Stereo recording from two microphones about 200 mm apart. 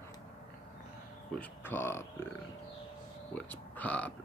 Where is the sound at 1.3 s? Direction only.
10° left (ahead or behind).